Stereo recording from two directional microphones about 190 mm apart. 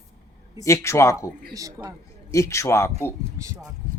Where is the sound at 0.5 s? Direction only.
15° left (ahead or behind).